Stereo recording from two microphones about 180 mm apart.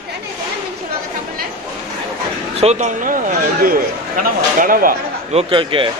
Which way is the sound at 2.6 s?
40° right (ahead or behind).